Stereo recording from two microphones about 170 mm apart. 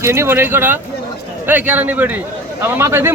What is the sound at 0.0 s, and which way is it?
A man's voice, 15° right (ahead or behind).